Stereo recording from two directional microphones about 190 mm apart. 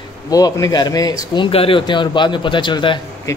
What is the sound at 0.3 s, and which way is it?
A man's voice, 20° left (ahead or behind).